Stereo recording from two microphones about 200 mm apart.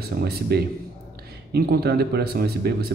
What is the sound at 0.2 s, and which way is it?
A man's voice, 55° right (ahead or behind).